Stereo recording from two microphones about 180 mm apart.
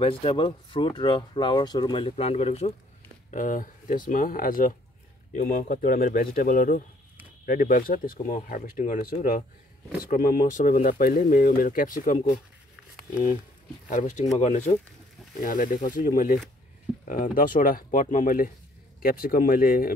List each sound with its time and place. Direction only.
0.0 s speech: 30° left (ahead or behind)
3.3 s speech: 45° left (ahead or behind)